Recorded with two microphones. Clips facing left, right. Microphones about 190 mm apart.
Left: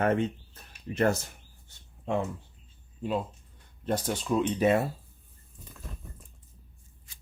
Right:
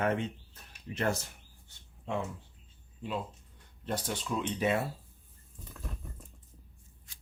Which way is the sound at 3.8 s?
45° left (ahead or behind).